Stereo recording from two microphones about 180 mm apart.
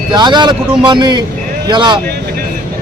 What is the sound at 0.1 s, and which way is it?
Speech, 25° right (ahead or behind).